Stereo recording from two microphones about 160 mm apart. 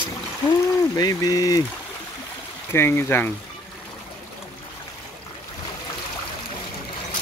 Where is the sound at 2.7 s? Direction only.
15° left (ahead or behind).